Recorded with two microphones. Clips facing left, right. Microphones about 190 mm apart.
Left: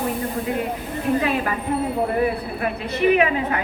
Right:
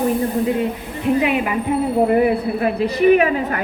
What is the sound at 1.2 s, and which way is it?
Speech, 15° right (ahead or behind).